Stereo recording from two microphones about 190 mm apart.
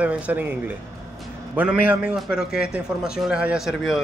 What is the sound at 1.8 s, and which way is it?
Speech, 5° right (ahead or behind).